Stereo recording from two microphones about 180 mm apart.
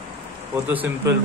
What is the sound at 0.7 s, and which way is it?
Speech, 10° right (ahead or behind).